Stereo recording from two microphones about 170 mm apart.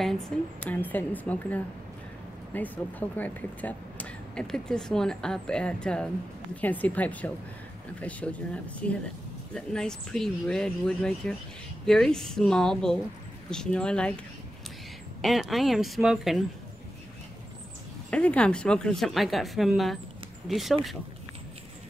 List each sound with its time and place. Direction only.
0.3 s a woman's voice: 5° left (ahead or behind)
15.2 s speech: centre (ahead or behind)
18.1 s speech: 5° left (ahead or behind)